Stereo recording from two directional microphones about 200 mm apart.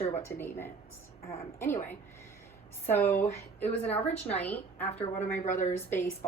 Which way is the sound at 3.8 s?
30° left (ahead or behind).